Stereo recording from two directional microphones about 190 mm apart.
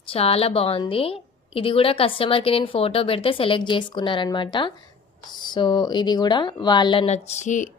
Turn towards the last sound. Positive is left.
turn(degrees=40)  # may be behind; listen again after turning